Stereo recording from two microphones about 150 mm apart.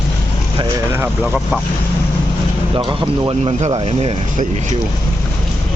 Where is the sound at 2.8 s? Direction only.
30° right (ahead or behind).